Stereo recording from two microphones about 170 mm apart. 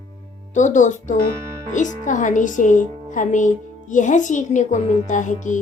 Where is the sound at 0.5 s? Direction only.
45° left (ahead or behind).